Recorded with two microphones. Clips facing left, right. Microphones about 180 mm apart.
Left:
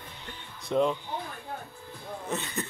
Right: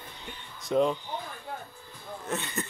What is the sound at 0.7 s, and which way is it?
Speech, centre (ahead or behind).